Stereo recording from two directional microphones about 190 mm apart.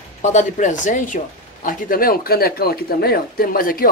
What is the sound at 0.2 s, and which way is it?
Speech, 40° left (ahead or behind).